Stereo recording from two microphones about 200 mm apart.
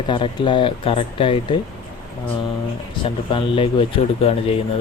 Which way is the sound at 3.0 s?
25° left (ahead or behind).